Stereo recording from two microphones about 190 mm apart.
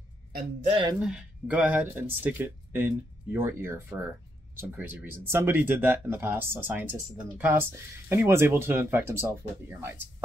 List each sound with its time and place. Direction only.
0.7 s speech: 25° right (ahead or behind)
0.9 s speech: 5° right (ahead or behind)